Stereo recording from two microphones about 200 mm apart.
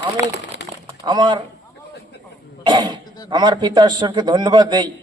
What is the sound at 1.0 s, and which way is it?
Speech, 20° right (ahead or behind).